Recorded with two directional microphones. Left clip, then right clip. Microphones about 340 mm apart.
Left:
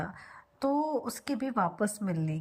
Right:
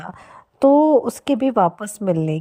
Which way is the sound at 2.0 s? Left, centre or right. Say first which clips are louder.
Right 16 dB; right.